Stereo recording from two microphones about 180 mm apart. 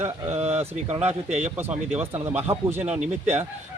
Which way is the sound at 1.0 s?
35° right (ahead or behind).